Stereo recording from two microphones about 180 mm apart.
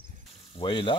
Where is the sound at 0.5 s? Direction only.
30° left (ahead or behind).